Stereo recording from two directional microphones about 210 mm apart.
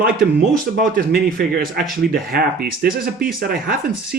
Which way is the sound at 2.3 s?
45° right (ahead or behind).